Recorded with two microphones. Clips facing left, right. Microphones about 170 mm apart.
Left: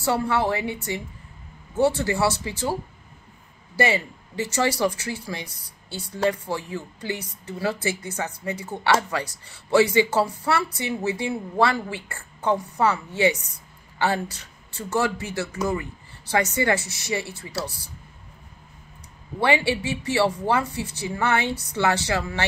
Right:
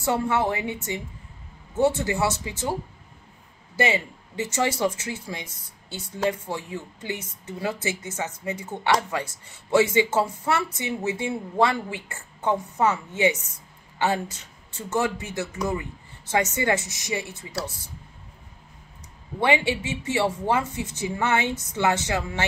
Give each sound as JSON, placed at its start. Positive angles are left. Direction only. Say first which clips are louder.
{"t": 0.0, "sound": "speech", "louder": "left 1 dB", "side_deg": -20}
{"t": 1.8, "sound": "speech", "louder": "left 1 dB", "side_deg": -20}
{"t": 3.7, "sound": "speech", "louder": "left 1 dB", "side_deg": -20}
{"t": 19.4, "sound": "speech", "louder": "left 1 dB", "side_deg": -20}